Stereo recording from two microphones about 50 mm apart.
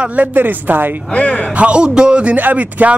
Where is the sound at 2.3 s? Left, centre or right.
Right.